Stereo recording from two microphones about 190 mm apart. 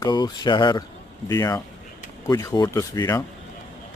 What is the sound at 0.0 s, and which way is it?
Speech, 20° left (ahead or behind).